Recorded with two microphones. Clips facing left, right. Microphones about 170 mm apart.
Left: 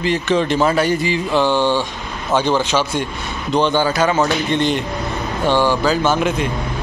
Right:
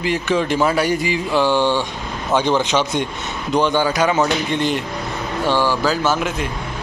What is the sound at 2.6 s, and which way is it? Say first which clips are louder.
Speech: even; 20° right (ahead or behind).